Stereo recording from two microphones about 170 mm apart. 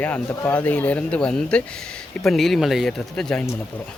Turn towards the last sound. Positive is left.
turn(degrees=5)  # may be behind; listen again after turning